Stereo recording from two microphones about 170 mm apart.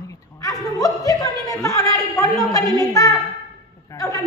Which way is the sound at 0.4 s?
20° left (ahead or behind).